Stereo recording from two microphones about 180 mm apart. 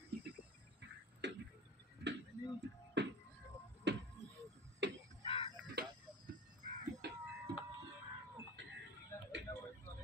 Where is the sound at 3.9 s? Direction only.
75° right (ahead or behind).